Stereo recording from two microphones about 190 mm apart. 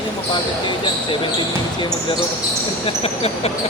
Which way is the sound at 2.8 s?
30° left (ahead or behind).